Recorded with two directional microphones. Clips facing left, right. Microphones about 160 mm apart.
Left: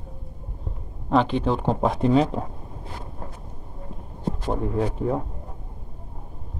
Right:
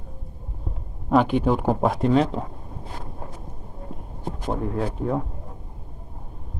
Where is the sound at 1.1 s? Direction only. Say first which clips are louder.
Right 2 dB; 10° right (ahead or behind).